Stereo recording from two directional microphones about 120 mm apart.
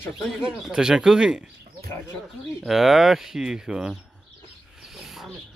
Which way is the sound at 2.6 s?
Centre (ahead or behind).